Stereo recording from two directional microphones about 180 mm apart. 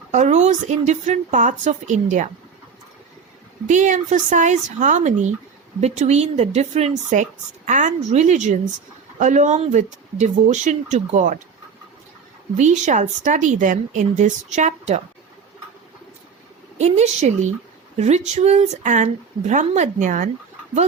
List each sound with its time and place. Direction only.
0.1 s speech: 40° right (ahead or behind)
3.7 s speech: 45° right (ahead or behind)
12.5 s speech: 40° right (ahead or behind)
16.7 s speech: 40° right (ahead or behind)